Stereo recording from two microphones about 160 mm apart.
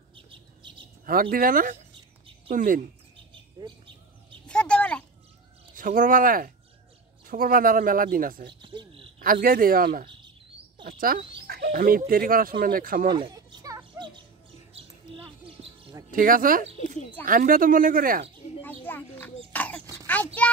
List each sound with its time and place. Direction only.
0.1 s bird: 30° right (ahead or behind)
1.3 s speech: 60° right (ahead or behind)
3.6 s speech: 25° right (ahead or behind)
4.5 s a sound: 5° left (ahead or behind)
5.8 s speech: 60° right (ahead or behind)
8.5 s cricket: 30° right (ahead or behind)
9.2 s speech: 65° right (ahead or behind)
11.4 s speech: 80° right; by 13.1 s 65° right (ahead or behind)
13.1 s a sound: 25° right (ahead or behind)
14.7 s bird: 35° right (ahead or behind)
16.1 s speech: 60° right (ahead or behind)
18.6 s a sound: 15° left (ahead or behind)
20.4 s a child's voice: 10° left (ahead or behind)